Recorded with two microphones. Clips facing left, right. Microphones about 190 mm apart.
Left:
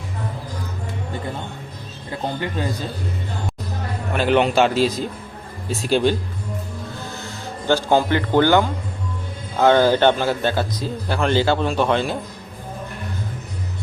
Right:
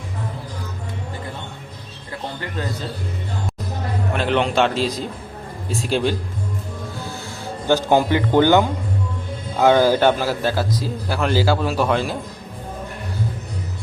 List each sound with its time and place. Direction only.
4.1 s a man's voice: 5° left (ahead or behind)
7.7 s a man's voice: 15° right (ahead or behind)